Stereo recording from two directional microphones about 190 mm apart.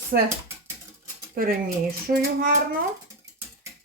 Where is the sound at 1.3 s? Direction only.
50° right (ahead or behind).